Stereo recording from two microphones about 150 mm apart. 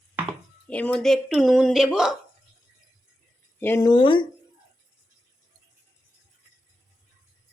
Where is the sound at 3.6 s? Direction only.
15° left (ahead or behind).